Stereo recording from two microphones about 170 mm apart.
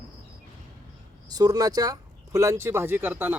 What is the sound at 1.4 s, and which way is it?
Speech, 20° right (ahead or behind).